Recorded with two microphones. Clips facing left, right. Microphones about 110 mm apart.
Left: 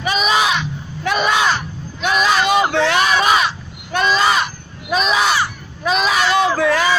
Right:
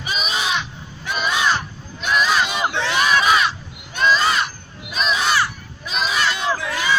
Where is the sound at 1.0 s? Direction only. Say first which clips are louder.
Left 4 dB; 80° left.